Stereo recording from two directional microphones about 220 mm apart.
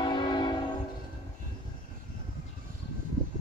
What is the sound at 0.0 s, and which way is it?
Train, 20° left (ahead or behind).